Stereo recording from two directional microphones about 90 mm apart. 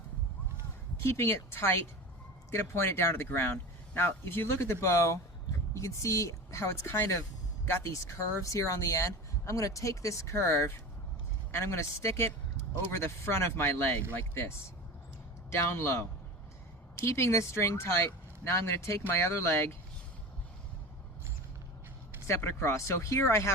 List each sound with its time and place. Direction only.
1.0 s speech: 25° left (ahead or behind)
22.3 s speech: 30° left (ahead or behind)